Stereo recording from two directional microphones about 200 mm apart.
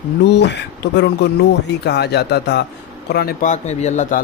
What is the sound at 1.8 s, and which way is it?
A man's voice, 55° left (ahead or behind).